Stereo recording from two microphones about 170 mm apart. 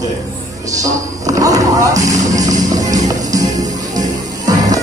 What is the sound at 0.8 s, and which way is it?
Music, 20° right (ahead or behind).